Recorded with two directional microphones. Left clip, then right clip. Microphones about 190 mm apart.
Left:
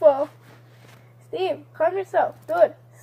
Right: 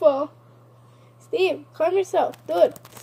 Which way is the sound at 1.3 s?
15° right (ahead or behind).